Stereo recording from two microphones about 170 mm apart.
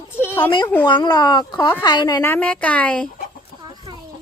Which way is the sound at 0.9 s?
25° left (ahead or behind).